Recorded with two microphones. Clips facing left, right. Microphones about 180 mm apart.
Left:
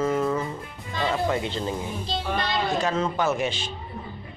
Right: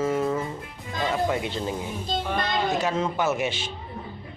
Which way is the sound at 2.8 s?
10° right (ahead or behind).